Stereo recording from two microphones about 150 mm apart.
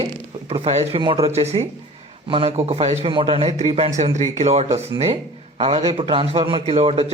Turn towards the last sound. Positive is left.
turn(degrees=-40)  # may be behind; listen again after turning